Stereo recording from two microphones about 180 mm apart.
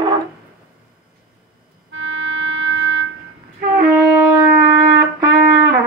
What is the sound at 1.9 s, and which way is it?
Music, 90° right.